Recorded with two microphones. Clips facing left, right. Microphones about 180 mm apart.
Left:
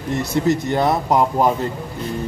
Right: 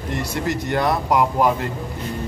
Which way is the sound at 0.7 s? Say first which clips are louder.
Right 2 dB; 25° left (ahead or behind).